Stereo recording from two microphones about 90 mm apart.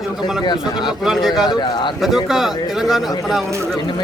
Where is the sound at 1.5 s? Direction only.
60° left (ahead or behind).